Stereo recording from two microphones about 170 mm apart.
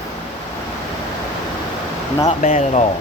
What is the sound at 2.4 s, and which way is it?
Speech, 40° left (ahead or behind).